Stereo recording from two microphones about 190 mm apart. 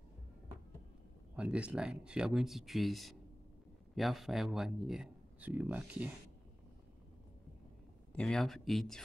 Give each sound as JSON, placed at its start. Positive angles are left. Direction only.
{"t": 1.3, "sound": "speech", "side_deg": -5}
{"t": 8.1, "sound": "speech", "side_deg": 5}